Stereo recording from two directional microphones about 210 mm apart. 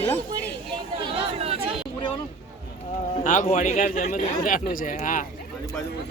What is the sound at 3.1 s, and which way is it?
A man's voice, 35° left (ahead or behind).